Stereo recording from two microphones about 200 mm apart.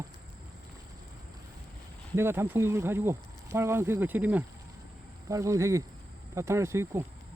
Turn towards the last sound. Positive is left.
turn(degrees=-15)  # may be behind; listen again after turning